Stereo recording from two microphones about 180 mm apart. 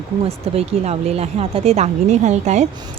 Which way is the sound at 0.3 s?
35° right (ahead or behind).